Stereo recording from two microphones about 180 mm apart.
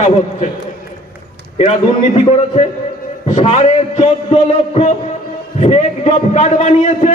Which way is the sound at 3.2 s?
40° left (ahead or behind).